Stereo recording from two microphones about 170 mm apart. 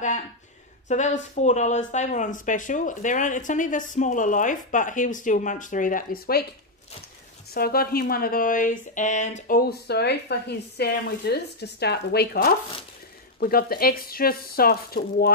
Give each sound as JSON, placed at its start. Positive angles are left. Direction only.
{"t": 0.8, "sound": "speech", "side_deg": 45}
{"t": 7.5, "sound": "speech", "side_deg": 65}
{"t": 9.6, "sound": "speech", "side_deg": 70}